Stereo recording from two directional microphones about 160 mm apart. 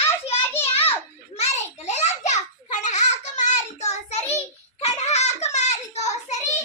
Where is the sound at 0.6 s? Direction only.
40° left (ahead or behind).